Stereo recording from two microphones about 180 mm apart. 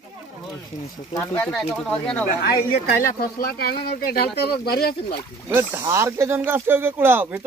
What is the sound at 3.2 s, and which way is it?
Speech, 60° left (ahead or behind).